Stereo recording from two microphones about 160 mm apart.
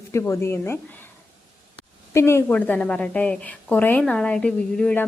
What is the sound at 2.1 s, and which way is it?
A woman's voice, 15° left (ahead or behind).